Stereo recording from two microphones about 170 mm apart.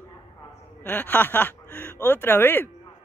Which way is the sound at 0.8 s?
10° left (ahead or behind).